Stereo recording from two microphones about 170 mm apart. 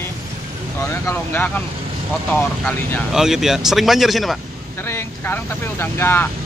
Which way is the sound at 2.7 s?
10° left (ahead or behind).